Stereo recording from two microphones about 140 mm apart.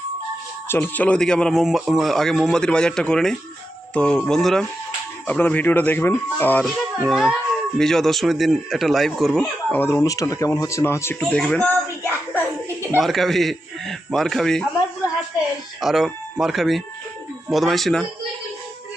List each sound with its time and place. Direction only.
0.7 s a man's voice: 10° left (ahead or behind)
6.7 s a man's voice: centre (ahead or behind)
9.7 s speech: 15° left (ahead or behind)
11.2 s a man's voice: 5° left (ahead or behind)
13.0 s a man's voice: centre (ahead or behind)